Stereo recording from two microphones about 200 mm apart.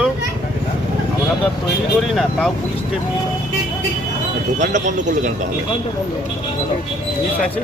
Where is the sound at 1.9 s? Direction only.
Centre (ahead or behind).